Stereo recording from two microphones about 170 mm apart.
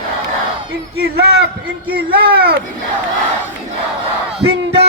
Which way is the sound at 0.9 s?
65° right (ahead or behind).